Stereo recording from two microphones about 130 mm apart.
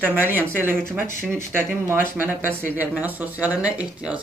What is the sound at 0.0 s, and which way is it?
A man's voice, 15° right (ahead or behind).